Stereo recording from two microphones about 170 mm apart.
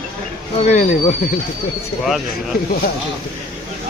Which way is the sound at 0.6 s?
40° left (ahead or behind).